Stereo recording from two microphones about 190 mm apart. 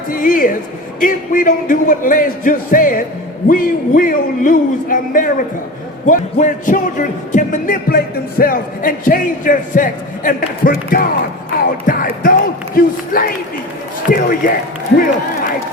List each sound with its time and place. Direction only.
0.1 s speech: 45° left (ahead or behind)